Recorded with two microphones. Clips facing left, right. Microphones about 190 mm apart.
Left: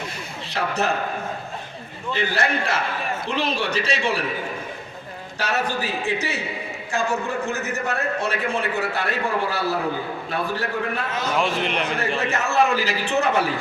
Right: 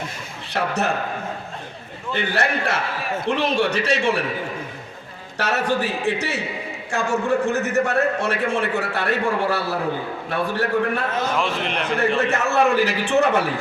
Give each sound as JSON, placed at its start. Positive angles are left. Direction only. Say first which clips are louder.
{"t": 0.5, "sound": "a man's voice", "louder": "right 1 dB", "side_deg": -70}
{"t": 2.1, "sound": "a man's voice", "louder": "right 1 dB", "side_deg": -70}
{"t": 5.4, "sound": "a man's voice", "louder": "right 3 dB", "side_deg": -70}
{"t": 11.3, "sound": "a man's voice", "louder": "left 1 dB", "side_deg": 0}
{"t": 12.3, "sound": "a man's voice", "louder": "right 2 dB", "side_deg": -65}